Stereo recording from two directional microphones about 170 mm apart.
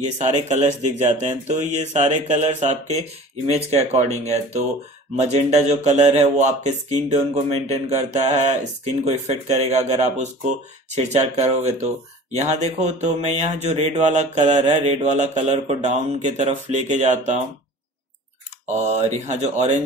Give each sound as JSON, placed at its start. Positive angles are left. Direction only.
{"t": 0.2, "sound": "speech", "side_deg": -40}
{"t": 11.3, "sound": "speech", "side_deg": -40}
{"t": 18.8, "sound": "speech", "side_deg": -40}